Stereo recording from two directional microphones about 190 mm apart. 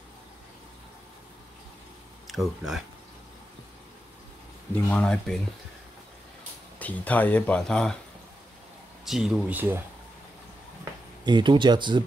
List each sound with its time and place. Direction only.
2.2 s speech: centre (ahead or behind)
4.8 s speech: 5° left (ahead or behind)
6.8 s speech: 10° left (ahead or behind)
9.0 s speech: centre (ahead or behind)
11.2 s speech: 25° right (ahead or behind)